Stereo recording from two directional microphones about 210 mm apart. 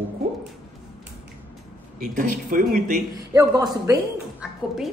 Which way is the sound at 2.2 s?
40° right (ahead or behind).